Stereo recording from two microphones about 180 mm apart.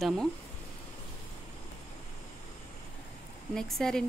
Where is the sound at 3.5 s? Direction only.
5° left (ahead or behind).